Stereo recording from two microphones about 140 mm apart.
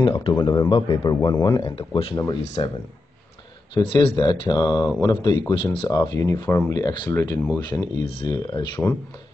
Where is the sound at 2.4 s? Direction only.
50° left (ahead or behind).